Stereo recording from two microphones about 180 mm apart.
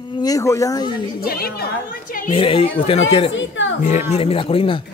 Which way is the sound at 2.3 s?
30° left (ahead or behind).